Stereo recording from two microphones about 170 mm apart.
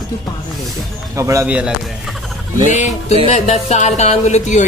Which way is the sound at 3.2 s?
40° left (ahead or behind).